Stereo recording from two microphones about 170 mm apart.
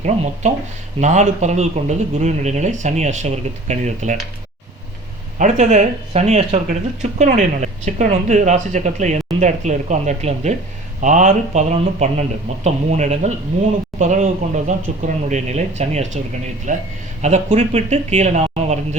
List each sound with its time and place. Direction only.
0.4 s speech: 45° right (ahead or behind)
5.4 s speech: 45° right (ahead or behind)